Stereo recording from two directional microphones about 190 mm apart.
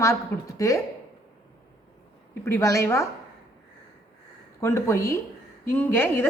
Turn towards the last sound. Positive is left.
turn(degrees=10)  # may be behind; listen again after turning